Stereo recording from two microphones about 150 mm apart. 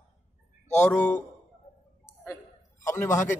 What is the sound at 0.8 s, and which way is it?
Speech, 10° left (ahead or behind).